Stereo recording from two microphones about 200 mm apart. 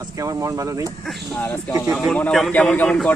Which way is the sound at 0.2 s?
15° right (ahead or behind).